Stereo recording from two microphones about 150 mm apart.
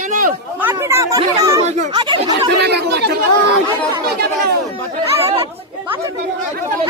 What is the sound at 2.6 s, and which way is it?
Speech, 90° right.